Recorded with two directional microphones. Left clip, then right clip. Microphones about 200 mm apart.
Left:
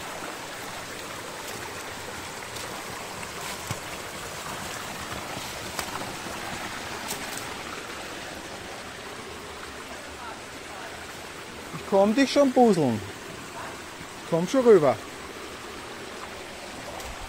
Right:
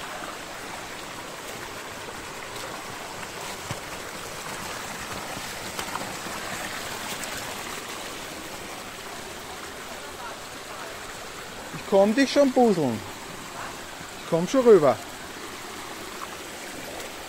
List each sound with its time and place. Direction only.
11.9 s speech: 5° right (ahead or behind)
14.3 s speech: 10° right (ahead or behind)